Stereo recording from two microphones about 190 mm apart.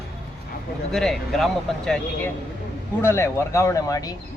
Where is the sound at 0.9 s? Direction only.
Centre (ahead or behind).